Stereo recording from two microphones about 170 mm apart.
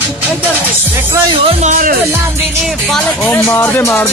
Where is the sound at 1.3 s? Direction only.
40° right (ahead or behind).